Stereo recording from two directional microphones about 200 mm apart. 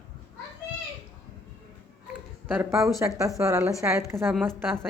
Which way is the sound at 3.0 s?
15° right (ahead or behind).